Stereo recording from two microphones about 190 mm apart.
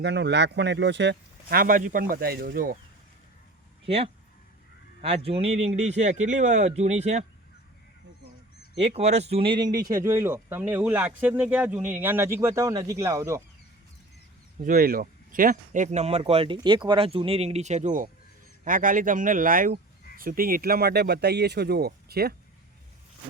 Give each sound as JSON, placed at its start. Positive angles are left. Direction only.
{"t": 0.0, "sound": "speech", "side_deg": -65}
{"t": 3.8, "sound": "speech", "side_deg": -30}
{"t": 8.8, "sound": "speech", "side_deg": -35}
{"t": 14.6, "sound": "speech", "side_deg": -50}